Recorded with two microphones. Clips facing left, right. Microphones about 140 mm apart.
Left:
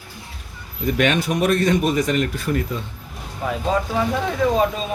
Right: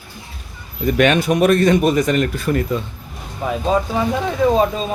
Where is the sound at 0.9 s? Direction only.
60° right (ahead or behind).